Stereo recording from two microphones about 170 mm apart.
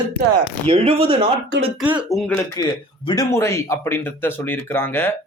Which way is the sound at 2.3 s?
15° left (ahead or behind).